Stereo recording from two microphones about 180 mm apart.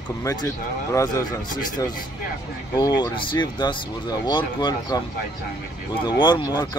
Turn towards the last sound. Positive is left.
turn(degrees=25)  # may be behind; listen again after turning